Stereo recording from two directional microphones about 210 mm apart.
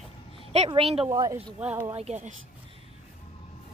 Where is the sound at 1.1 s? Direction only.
15° right (ahead or behind).